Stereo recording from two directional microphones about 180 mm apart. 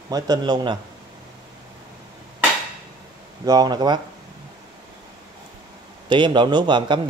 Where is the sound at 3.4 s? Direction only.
20° right (ahead or behind).